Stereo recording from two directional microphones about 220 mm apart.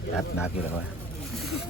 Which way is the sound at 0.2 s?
5° right (ahead or behind).